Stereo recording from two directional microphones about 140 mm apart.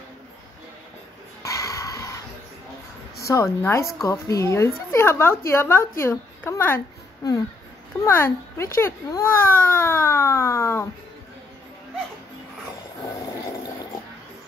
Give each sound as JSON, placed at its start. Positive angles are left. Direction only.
{"t": 1.4, "sound": "a sound", "side_deg": 20}
{"t": 3.3, "sound": "a woman's voice", "side_deg": 20}
{"t": 8.0, "sound": "a child's voice", "side_deg": 20}